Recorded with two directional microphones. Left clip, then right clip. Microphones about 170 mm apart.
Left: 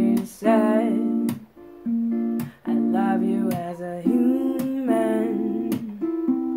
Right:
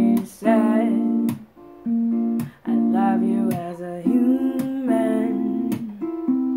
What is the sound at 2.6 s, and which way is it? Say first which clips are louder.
Music: right 2 dB; 5° left (ahead or behind).